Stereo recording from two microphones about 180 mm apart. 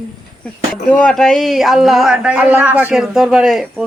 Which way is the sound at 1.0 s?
5° left (ahead or behind).